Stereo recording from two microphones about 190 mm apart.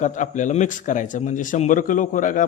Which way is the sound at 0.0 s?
40° left (ahead or behind).